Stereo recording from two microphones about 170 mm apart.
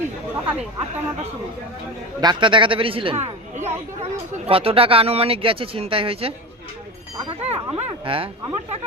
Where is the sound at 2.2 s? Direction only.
30° right (ahead or behind).